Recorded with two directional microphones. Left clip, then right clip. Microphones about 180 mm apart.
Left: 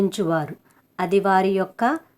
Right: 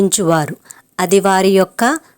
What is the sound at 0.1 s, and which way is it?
Speech, 35° right (ahead or behind).